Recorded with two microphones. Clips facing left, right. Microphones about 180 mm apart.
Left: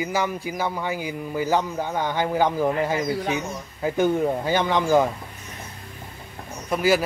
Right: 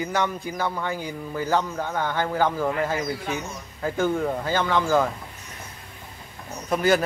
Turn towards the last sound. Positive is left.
turn(degrees=5)  # may be behind; listen again after turning